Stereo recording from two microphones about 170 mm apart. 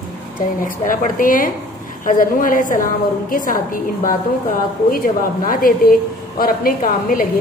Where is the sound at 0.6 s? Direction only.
50° left (ahead or behind).